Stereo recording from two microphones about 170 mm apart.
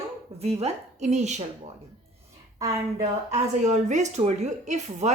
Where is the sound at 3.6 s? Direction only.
45° right (ahead or behind).